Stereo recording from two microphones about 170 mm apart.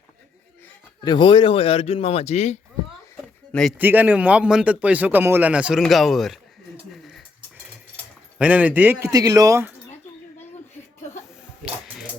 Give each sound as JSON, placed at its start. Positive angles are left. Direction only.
{"t": 1.0, "sound": "a man's voice", "side_deg": 25}
{"t": 3.5, "sound": "speech", "side_deg": 5}
{"t": 3.8, "sound": "a man's voice", "side_deg": -10}
{"t": 5.8, "sound": "a sound", "side_deg": 0}
{"t": 8.4, "sound": "a man's voice", "side_deg": -10}